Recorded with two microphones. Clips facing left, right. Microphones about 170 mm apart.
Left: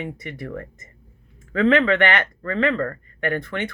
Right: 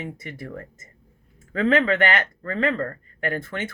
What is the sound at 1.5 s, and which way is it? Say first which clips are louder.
Speech: left 3 dB; 40° right (ahead or behind).